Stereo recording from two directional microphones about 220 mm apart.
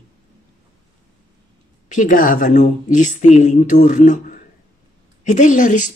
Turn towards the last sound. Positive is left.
turn(degrees=35)  # may be behind; listen again after turning